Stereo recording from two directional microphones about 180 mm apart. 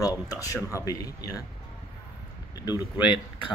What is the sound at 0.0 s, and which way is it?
A man's voice, 20° left (ahead or behind).